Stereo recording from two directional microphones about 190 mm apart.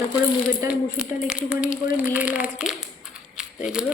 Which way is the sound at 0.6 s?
5° right (ahead or behind).